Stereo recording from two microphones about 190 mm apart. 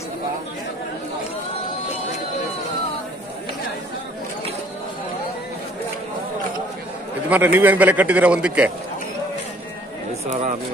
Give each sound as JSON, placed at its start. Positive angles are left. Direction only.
{"t": 7.2, "sound": "a man's voice", "side_deg": -10}